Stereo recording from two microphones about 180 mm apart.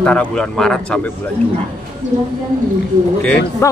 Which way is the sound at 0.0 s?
5° left (ahead or behind).